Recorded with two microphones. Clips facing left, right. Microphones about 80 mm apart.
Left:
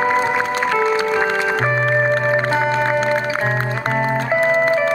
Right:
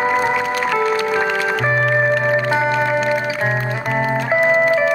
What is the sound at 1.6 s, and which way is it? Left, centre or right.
Music, left.